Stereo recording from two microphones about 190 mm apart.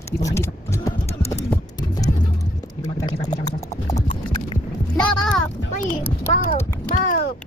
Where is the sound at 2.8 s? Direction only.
20° left (ahead or behind).